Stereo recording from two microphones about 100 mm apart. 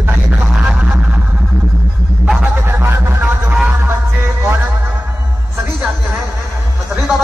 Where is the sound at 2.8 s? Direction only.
20° right (ahead or behind).